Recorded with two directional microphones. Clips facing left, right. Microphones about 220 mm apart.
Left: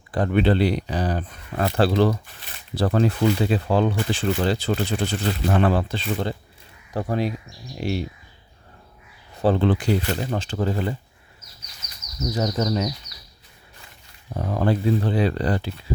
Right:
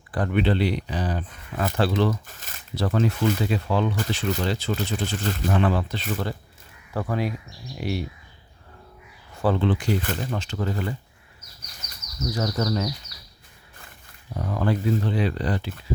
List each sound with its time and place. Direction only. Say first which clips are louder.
0.1 s speech: left 3 dB; 30° left (ahead or behind)
2.2 s speech: even; 45° right (ahead or behind)
2.7 s speech: left 3 dB; 35° left (ahead or behind)
9.3 s a sound: left 3 dB; 25° left (ahead or behind)
9.6 s speech: left 3 dB; 35° left (ahead or behind)
12.2 s speech: left 2 dB; 20° left (ahead or behind)
14.3 s speech: left 3 dB; 30° left (ahead or behind)